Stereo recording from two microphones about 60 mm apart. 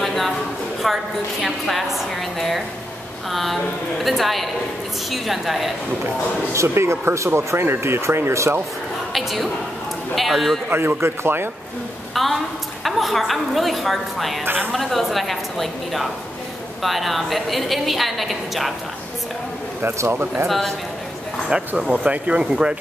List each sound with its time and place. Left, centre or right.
0.0 s a sound: centre
0.8 s a woman's voice: centre
6.5 s speech: right
9.1 s a woman's voice: centre
10.7 s a man's voice: right
12.1 s a sound: centre
12.8 s a woman's voice: centre
14.4 s a man's voice: right
14.7 s a woman's voice: centre
19.8 s speech: right
20.4 s a woman's voice: centre
21.5 s speech: centre